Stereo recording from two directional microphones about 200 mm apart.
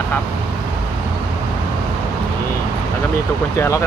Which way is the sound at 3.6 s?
15° left (ahead or behind).